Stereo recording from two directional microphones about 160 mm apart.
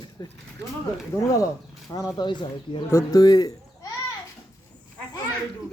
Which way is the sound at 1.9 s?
20° left (ahead or behind).